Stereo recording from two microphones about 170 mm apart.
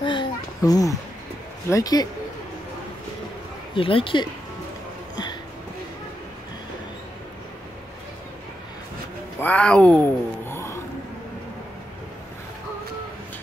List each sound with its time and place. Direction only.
0.0 s a sound: 25° left (ahead or behind)
1.7 s speech: 20° left (ahead or behind)
3.7 s speech: 30° left (ahead or behind)
9.4 s speech: 10° left (ahead or behind)